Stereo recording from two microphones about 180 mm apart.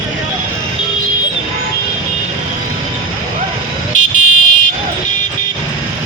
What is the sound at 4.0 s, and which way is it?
Vehicle, 45° left (ahead or behind).